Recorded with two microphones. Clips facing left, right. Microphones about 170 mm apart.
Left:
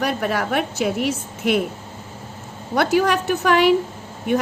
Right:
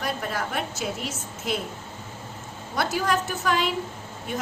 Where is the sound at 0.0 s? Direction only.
70° left (ahead or behind).